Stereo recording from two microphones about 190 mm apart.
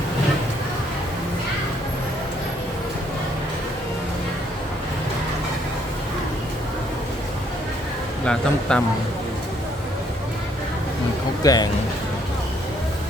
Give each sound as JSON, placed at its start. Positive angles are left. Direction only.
{"t": 8.2, "sound": "speech", "side_deg": 5}
{"t": 11.4, "sound": "speech", "side_deg": 20}